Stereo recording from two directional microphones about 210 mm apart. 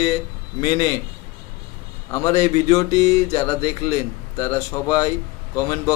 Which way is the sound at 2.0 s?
15° left (ahead or behind).